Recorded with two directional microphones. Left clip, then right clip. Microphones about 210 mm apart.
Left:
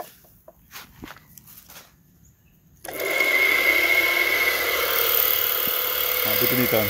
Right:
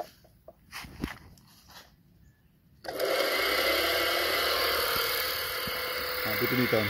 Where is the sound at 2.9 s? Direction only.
15° right (ahead or behind).